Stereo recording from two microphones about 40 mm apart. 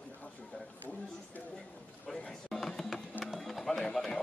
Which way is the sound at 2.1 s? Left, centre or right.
Centre.